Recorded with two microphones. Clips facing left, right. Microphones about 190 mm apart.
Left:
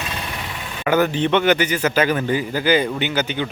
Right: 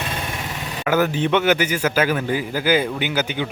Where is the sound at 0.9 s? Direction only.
5° right (ahead or behind).